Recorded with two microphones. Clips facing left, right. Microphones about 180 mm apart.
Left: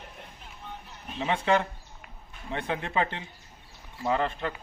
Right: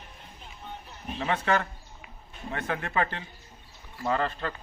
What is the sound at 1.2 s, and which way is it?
Speech, 20° left (ahead or behind).